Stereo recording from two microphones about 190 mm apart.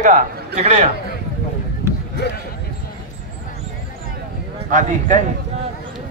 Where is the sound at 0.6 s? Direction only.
35° right (ahead or behind).